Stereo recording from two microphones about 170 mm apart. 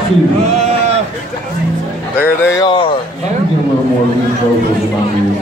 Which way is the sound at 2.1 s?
15° left (ahead or behind).